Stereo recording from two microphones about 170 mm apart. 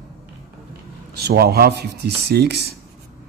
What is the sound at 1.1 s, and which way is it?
Speech, 70° right (ahead or behind).